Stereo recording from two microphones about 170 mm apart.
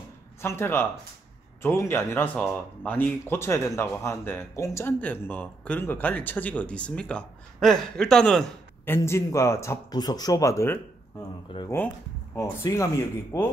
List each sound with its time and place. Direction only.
0.4 s speech: 15° left (ahead or behind)
11.6 s speech: 30° left (ahead or behind)
12.4 s speech: 20° left (ahead or behind)